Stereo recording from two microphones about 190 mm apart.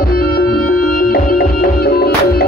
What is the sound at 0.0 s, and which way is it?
Music, 50° left (ahead or behind).